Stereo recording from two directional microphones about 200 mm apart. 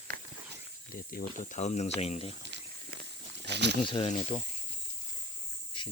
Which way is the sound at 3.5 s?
60° right (ahead or behind).